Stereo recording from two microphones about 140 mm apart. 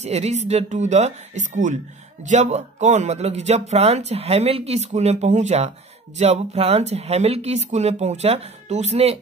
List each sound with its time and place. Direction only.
0.0 s speech: 50° right (ahead or behind)